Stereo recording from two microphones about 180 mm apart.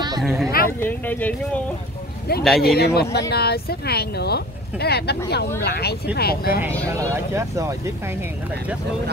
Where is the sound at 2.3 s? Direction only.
60° left (ahead or behind).